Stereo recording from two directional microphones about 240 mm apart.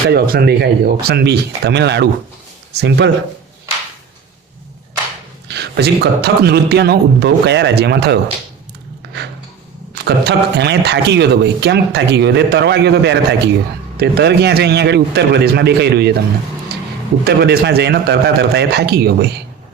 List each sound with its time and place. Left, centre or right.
0.1 s speech: right
5.5 s speech: right
9.9 s speech: right
16.7 s a sound: right
17.2 s speech: right